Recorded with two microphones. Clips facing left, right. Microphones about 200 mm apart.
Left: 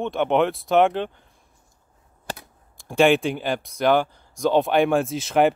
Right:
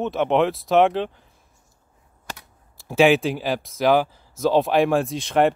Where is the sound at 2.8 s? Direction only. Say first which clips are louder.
Right 1 dB; 5° right (ahead or behind).